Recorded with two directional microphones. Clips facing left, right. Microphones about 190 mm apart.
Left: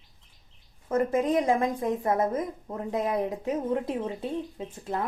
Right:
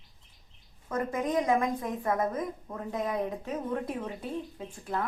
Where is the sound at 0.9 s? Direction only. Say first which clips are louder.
Left 6 dB; 25° left (ahead or behind).